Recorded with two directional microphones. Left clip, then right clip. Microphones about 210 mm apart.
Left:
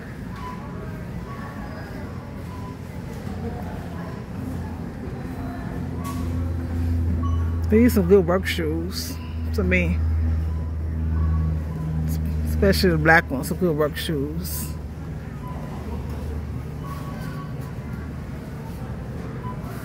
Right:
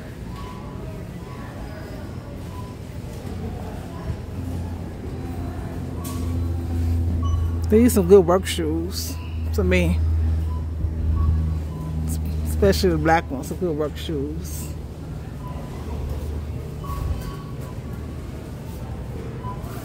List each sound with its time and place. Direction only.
7.7 s speech: 20° right (ahead or behind)
9.7 s speech: 25° right (ahead or behind)
12.1 s speech: 10° right (ahead or behind)
13.5 s speech: 10° left (ahead or behind)